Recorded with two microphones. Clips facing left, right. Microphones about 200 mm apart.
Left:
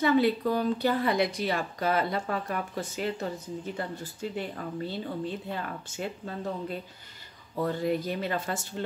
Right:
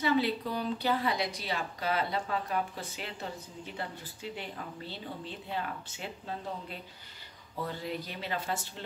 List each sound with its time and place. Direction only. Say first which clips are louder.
0.0 s a woman's voice: left 5 dB; 50° left (ahead or behind)
7.6 s a woman's voice: left 9 dB; 50° left (ahead or behind)